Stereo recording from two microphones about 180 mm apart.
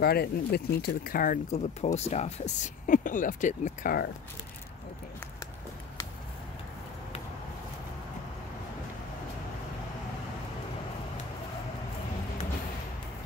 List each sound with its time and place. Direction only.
0.0 s speech: 60° left (ahead or behind)